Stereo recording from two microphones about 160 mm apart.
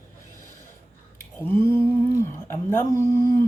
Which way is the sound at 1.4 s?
15° left (ahead or behind).